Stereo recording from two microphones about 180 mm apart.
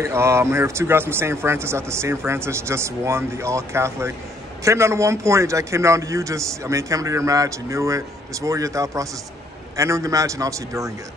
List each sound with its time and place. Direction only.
0.0 s speech: 15° right (ahead or behind)